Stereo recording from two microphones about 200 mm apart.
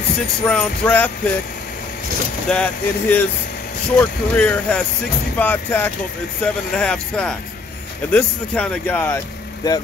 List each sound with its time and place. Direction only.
0.5 s speech: 5° left (ahead or behind)
2.5 s speech: 5° left (ahead or behind)